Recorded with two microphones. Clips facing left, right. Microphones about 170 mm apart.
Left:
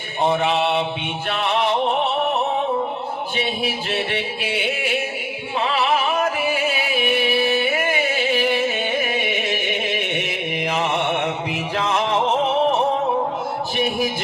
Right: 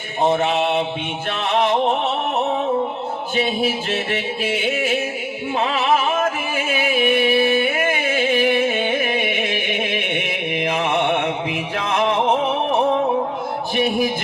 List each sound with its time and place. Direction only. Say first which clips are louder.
0.3 s music: right 1 dB; 40° right (ahead or behind)
3.3 s music: right 6 dB; 40° right (ahead or behind)
13.7 s a sound: right 3 dB; 50° right (ahead or behind)